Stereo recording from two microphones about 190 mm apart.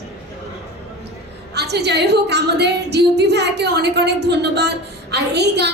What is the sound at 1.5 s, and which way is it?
A woman's voice, 60° right (ahead or behind).